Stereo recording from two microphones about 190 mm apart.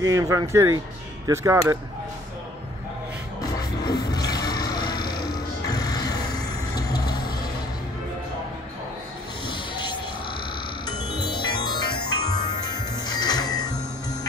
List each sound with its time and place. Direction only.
0.0 s speech: 15° right (ahead or behind)
3.8 s a sound: 20° left (ahead or behind)
6.7 s vehicle: 20° left (ahead or behind)
10.9 s music: 20° left (ahead or behind)